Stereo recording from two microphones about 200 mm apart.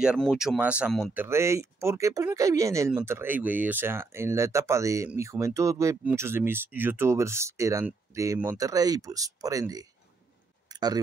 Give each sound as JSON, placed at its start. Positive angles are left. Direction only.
{"t": 0.0, "sound": "speech", "side_deg": 0}
{"t": 10.7, "sound": "tick-tock", "side_deg": -20}